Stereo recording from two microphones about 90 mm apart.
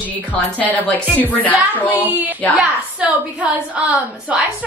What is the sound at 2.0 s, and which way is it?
A woman's voice, 20° right (ahead or behind).